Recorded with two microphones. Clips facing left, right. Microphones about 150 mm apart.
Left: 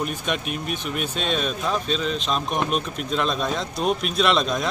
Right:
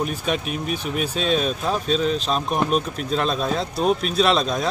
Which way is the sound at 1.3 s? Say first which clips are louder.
Right 2 dB; 40° right (ahead or behind).